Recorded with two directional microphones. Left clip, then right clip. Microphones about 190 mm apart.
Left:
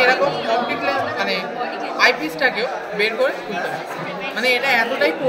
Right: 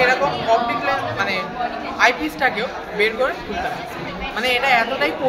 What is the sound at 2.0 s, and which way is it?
A woman's voice, 45° right (ahead or behind).